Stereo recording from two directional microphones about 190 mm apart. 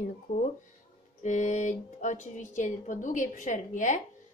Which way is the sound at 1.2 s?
40° left (ahead or behind).